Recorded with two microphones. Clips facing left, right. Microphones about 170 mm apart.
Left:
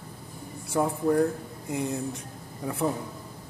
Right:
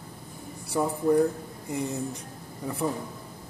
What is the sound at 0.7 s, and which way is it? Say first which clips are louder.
A man's voice: right 1 dB; centre (ahead or behind).